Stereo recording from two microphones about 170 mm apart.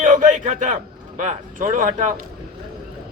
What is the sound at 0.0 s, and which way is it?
A man's voice, 50° right (ahead or behind).